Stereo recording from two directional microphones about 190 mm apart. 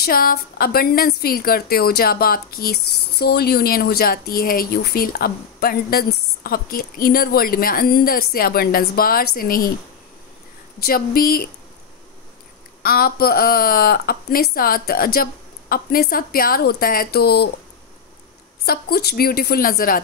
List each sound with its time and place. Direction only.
0.0 s a woman's voice: 50° left (ahead or behind)
10.8 s a woman's voice: 50° left (ahead or behind)
12.8 s a woman's voice: 50° left (ahead or behind)
18.7 s a woman's voice: 55° left (ahead or behind)